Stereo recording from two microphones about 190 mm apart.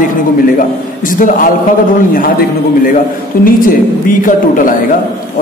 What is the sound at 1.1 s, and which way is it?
Speech, 45° left (ahead or behind).